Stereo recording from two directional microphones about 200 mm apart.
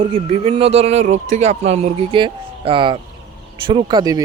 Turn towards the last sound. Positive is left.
turn(degrees=-20)  # may be behind; listen again after turning